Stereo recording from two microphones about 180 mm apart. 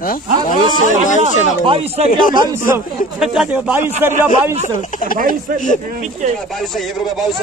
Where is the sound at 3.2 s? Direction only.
5° right (ahead or behind).